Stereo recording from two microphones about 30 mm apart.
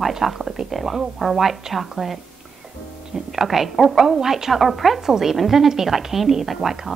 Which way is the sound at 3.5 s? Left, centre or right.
Centre.